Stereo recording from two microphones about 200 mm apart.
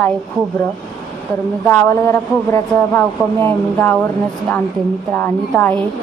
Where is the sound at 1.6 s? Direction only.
10° left (ahead or behind).